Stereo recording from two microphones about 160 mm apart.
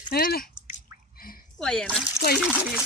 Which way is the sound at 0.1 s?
70° left (ahead or behind).